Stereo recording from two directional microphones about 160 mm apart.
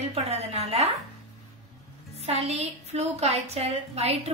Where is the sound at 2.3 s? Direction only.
40° right (ahead or behind).